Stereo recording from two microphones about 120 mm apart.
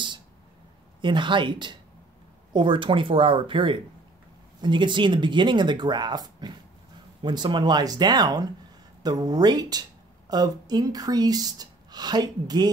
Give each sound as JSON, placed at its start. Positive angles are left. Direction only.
{"t": 1.0, "sound": "a woman's voice", "side_deg": -40}